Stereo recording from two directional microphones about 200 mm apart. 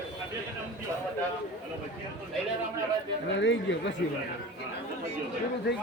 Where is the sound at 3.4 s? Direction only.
65° left (ahead or behind).